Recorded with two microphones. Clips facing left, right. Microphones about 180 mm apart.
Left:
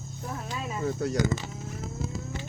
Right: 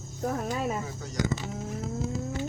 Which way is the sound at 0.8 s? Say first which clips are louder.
Left 11 dB; 65° left (ahead or behind).